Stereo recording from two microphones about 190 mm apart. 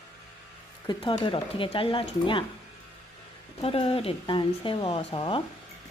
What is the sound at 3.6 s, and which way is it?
Speech, 30° left (ahead or behind).